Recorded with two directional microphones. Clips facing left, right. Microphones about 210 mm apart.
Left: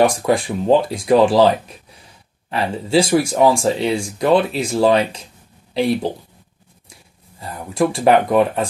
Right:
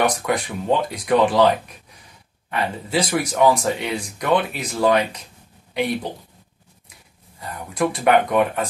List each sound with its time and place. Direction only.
0.0 s speech: 30° left (ahead or behind)
2.5 s speech: 30° left (ahead or behind)
7.3 s speech: 25° left (ahead or behind)